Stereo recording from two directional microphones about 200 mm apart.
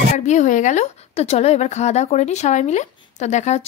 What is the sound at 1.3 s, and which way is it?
Speech, 30° left (ahead or behind).